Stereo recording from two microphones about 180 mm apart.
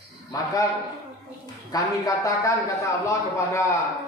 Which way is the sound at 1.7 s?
20° left (ahead or behind).